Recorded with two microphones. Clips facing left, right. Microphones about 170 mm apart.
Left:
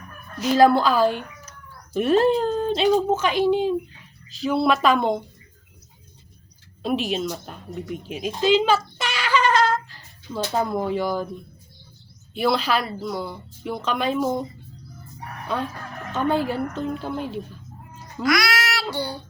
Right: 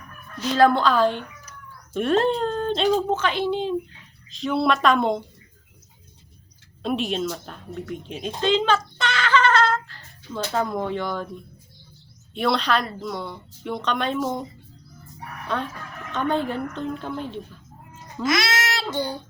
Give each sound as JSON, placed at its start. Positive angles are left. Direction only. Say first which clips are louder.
{"t": 0.3, "sound": "speech", "louder": "left 2 dB", "side_deg": 10}
{"t": 6.8, "sound": "speech", "louder": "left 1 dB", "side_deg": 0}
{"t": 12.3, "sound": "speech", "louder": "left 1 dB", "side_deg": 5}
{"t": 15.5, "sound": "speech", "louder": "left 1 dB", "side_deg": 5}
{"t": 18.2, "sound": "babbling", "louder": "left 1 dB", "side_deg": -25}